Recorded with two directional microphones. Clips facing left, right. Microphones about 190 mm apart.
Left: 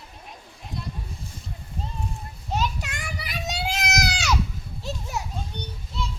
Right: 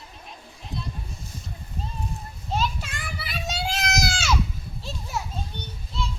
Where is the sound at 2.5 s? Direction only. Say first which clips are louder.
Even; 15° left (ahead or behind).